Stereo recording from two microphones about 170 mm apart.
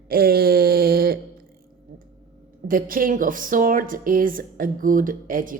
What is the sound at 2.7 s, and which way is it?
Speech, 55° right (ahead or behind).